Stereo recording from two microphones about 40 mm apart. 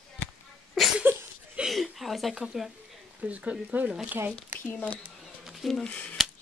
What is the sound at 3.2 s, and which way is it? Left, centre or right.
Speech, right.